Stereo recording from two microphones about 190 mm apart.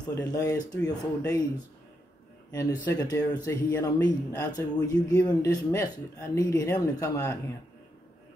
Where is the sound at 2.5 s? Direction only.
20° left (ahead or behind).